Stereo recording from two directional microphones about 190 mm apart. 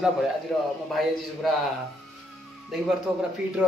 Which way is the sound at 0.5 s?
Centre (ahead or behind).